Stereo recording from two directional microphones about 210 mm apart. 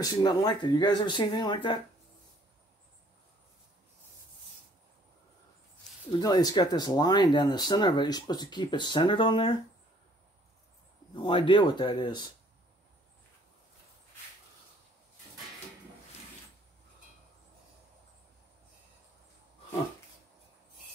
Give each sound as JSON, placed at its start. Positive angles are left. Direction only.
{"t": 0.0, "sound": "speech", "side_deg": 20}
{"t": 6.1, "sound": "speech", "side_deg": 20}
{"t": 11.2, "sound": "speech", "side_deg": 25}